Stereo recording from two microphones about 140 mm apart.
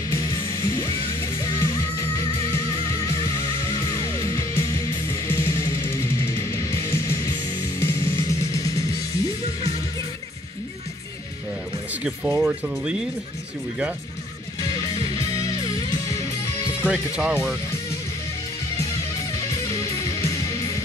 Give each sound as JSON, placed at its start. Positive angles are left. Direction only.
{"t": 0.1, "sound": "music", "side_deg": 20}
{"t": 11.9, "sound": "speech", "side_deg": -10}
{"t": 14.6, "sound": "music", "side_deg": 30}
{"t": 16.8, "sound": "speech", "side_deg": -10}
{"t": 20.2, "sound": "music", "side_deg": 20}